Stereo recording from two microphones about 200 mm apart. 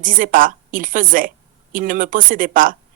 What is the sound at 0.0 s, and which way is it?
A woman's voice, 45° right (ahead or behind).